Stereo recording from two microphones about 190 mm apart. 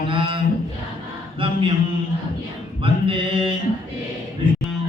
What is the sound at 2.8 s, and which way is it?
Mantra, 25° right (ahead or behind).